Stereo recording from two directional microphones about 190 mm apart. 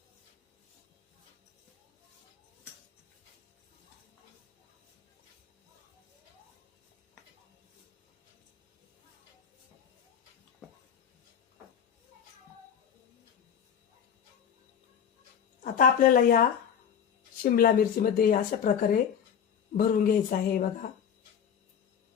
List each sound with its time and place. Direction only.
15.6 s speech: 45° left (ahead or behind)
17.4 s speech: 50° left (ahead or behind)